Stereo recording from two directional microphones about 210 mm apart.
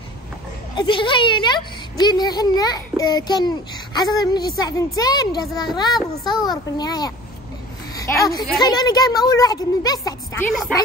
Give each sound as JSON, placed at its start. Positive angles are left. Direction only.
{"t": 0.7, "sound": "a woman's voice", "side_deg": 25}